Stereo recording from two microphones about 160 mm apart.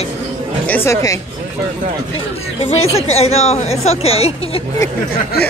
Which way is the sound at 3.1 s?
40° left (ahead or behind).